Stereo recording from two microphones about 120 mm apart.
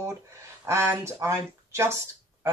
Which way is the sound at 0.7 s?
25° right (ahead or behind).